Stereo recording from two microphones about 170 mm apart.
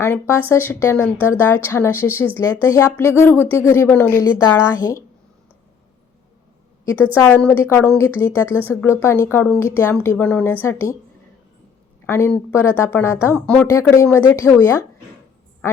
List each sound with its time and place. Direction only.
0.0 s speech: 15° left (ahead or behind)
6.9 s speech: 15° left (ahead or behind)
12.0 s speech: 15° left (ahead or behind)
15.6 s quack: 15° left (ahead or behind)